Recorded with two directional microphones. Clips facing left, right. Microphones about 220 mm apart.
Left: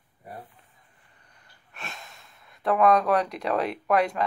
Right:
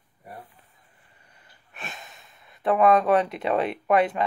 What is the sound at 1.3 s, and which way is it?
Speech, 5° right (ahead or behind).